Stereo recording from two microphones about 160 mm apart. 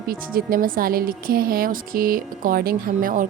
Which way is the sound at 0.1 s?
65° right (ahead or behind).